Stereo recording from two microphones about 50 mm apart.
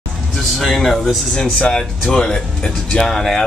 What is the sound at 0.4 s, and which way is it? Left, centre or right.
Speech, centre.